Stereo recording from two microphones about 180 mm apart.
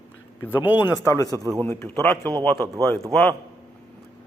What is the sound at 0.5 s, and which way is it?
Speech, 10° right (ahead or behind).